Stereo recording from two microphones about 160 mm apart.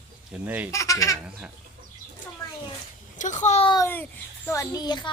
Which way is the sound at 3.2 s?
50° left (ahead or behind).